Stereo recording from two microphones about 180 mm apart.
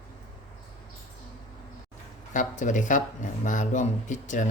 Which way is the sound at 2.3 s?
45° left (ahead or behind).